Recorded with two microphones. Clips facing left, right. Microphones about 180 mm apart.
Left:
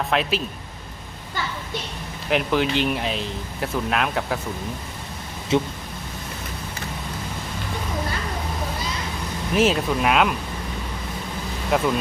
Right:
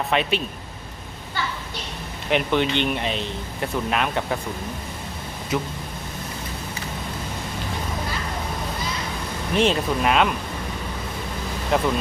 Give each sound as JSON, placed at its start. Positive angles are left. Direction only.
{"t": 0.1, "sound": "speech", "side_deg": 0}
{"t": 2.3, "sound": "speech", "side_deg": 0}
{"t": 5.5, "sound": "speech", "side_deg": 25}
{"t": 9.6, "sound": "speech", "side_deg": 5}
{"t": 11.7, "sound": "speech", "side_deg": 5}